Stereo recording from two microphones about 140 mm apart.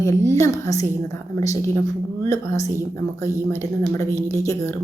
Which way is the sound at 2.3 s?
25° left (ahead or behind).